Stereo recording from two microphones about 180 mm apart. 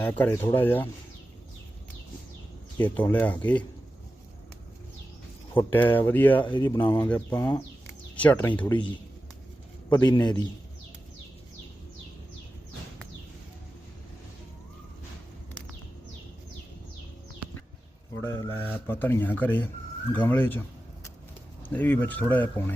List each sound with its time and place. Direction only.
0.0 s speech: 10° left (ahead or behind)
2.7 s speech: 10° left (ahead or behind)
5.7 s speech: 10° left (ahead or behind)
6.4 s speech: 25° left (ahead or behind)
7.3 s bird: 20° left (ahead or behind)
8.1 s speech: 10° left (ahead or behind)
9.9 s speech: 20° left (ahead or behind)
18.3 s speech: 15° left (ahead or behind)
21.6 s speech: 10° left (ahead or behind)